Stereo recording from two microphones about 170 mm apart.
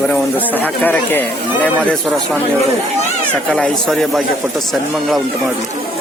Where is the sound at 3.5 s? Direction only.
Centre (ahead or behind).